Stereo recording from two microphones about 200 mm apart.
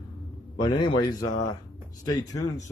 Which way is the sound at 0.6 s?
25° left (ahead or behind).